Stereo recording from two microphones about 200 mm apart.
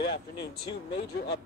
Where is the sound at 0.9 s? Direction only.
55° left (ahead or behind).